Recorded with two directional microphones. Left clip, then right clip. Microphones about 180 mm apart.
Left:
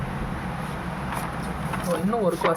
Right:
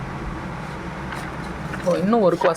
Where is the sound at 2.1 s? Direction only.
40° right (ahead or behind).